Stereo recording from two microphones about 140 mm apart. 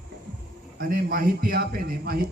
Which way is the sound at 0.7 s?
90° right.